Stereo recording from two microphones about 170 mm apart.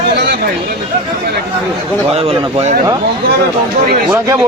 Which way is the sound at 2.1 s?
35° right (ahead or behind).